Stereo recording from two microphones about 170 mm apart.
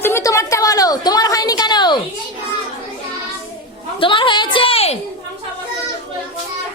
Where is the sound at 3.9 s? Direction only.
30° left (ahead or behind).